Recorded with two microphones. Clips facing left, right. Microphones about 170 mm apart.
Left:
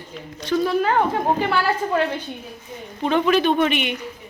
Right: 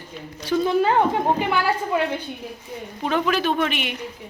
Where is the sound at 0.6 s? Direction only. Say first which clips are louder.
Right 1 dB; 20° right (ahead or behind).